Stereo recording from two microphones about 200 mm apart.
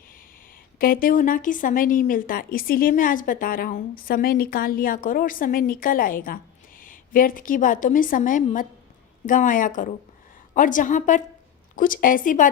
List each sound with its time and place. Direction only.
0.8 s a woman's voice: 45° left (ahead or behind)